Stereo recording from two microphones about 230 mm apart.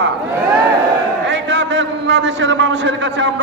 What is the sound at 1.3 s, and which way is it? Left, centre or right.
A man's voice, right.